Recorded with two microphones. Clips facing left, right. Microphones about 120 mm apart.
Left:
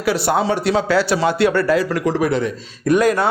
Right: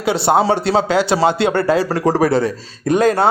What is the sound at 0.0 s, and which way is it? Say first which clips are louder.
A man's voice: right 3 dB; 25° right (ahead or behind).